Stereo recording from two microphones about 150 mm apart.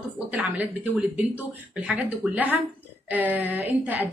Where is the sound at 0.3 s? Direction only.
10° right (ahead or behind).